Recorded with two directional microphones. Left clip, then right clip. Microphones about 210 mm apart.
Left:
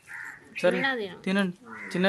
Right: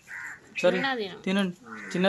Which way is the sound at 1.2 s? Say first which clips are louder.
Left 1 dB; 5° left (ahead or behind).